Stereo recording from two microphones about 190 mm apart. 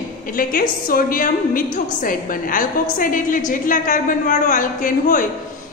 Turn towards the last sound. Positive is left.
turn(degrees=45)  # may be behind; listen again after turning